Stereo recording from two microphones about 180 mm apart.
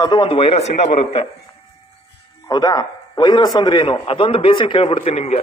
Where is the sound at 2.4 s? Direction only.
20° left (ahead or behind).